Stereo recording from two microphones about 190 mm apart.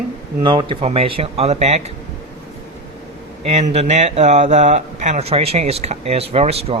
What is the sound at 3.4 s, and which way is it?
Speech, 30° right (ahead or behind).